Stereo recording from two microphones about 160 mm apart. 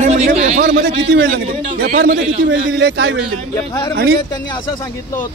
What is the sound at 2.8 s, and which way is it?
Speech, 90° right.